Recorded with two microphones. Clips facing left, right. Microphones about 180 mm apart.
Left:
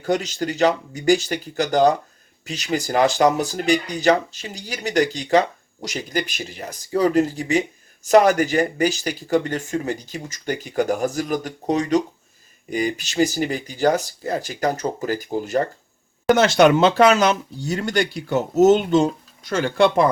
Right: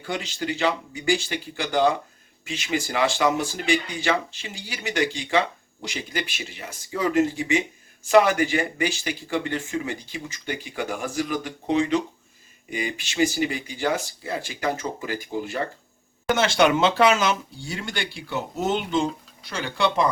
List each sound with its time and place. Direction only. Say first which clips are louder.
0.0 s speech: left 7 dB; 40° left (ahead or behind)